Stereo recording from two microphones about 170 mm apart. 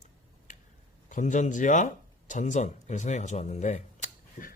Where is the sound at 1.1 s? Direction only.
45° left (ahead or behind).